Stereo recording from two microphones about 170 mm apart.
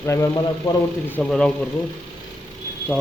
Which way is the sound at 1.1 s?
5° left (ahead or behind).